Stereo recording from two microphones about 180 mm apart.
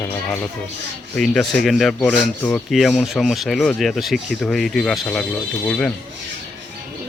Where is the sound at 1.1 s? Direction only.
5° left (ahead or behind).